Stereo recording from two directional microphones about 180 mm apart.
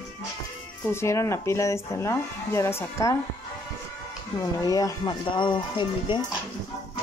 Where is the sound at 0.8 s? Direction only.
15° left (ahead or behind).